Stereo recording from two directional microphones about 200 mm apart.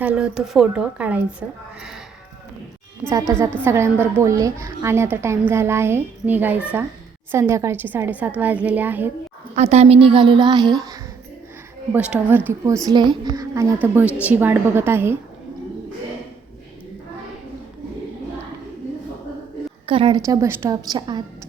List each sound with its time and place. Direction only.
0.0 s a woman's voice: 5° right (ahead or behind)
3.0 s a woman's voice: 15° right (ahead or behind)
9.6 s a woman's voice: 35° right (ahead or behind)
11.9 s a woman's voice: 10° right (ahead or behind)
19.9 s a woman's voice: 25° right (ahead or behind)